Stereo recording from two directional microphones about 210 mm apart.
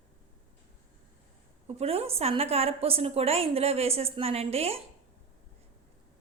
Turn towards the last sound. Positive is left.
turn(degrees=-30)  # may be behind; listen again after turning